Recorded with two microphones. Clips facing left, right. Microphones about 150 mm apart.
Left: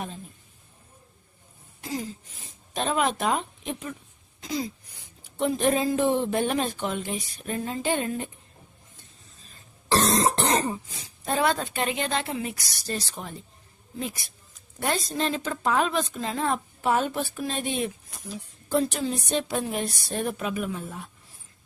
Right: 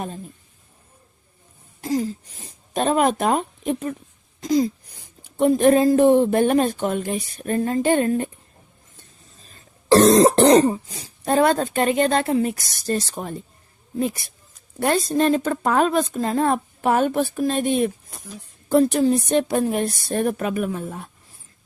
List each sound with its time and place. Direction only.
1.8 s a sound: 40° right (ahead or behind)
2.7 s a woman's voice: 45° right (ahead or behind)
9.4 s throat clearing: 35° right (ahead or behind)
14.8 s a woman's voice: 50° right (ahead or behind)